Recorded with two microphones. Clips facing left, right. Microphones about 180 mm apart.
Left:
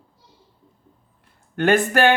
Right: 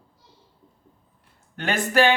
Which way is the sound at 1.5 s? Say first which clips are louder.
Left 5 dB; 55° left (ahead or behind).